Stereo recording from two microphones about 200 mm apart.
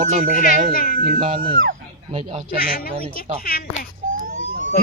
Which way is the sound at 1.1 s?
30° right (ahead or behind).